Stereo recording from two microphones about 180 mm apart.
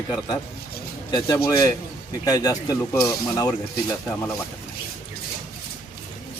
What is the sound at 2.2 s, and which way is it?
Speech, 20° left (ahead or behind).